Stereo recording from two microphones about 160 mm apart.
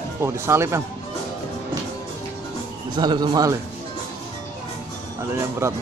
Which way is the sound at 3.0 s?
25° right (ahead or behind).